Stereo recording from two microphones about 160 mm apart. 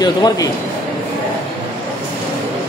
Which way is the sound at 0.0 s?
25° left (ahead or behind).